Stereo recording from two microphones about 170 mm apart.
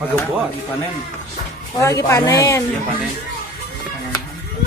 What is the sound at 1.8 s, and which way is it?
Speech, 20° left (ahead or behind).